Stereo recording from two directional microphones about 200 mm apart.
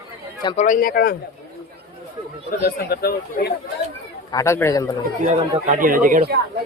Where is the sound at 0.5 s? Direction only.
40° left (ahead or behind).